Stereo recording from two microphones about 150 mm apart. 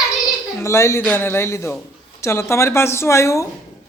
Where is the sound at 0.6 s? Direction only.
20° left (ahead or behind).